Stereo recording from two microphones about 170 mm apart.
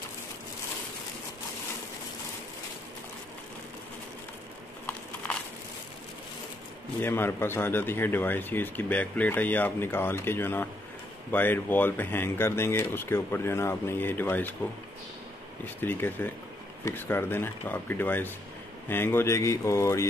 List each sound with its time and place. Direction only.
7.0 s a man's voice: 15° left (ahead or behind)
15.8 s a man's voice: 10° left (ahead or behind)